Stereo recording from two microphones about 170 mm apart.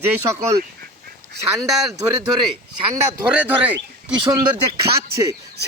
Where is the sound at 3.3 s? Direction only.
10° right (ahead or behind).